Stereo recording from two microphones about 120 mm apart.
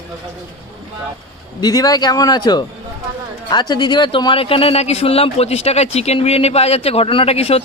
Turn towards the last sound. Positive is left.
turn(degrees=55)  # may be behind; listen again after turning